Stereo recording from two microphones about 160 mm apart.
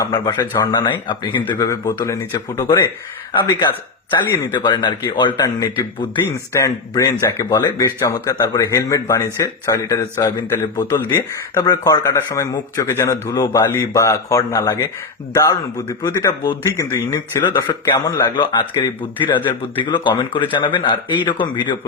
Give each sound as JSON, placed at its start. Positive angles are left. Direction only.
{"t": 0.0, "sound": "speech", "side_deg": 25}
{"t": 0.3, "sound": "a man's voice", "side_deg": 15}
{"t": 0.7, "sound": "speech", "side_deg": 30}
{"t": 4.5, "sound": "a man's voice", "side_deg": 30}